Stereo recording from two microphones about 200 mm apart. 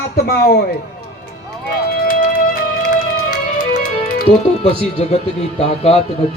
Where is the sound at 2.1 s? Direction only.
45° left (ahead or behind).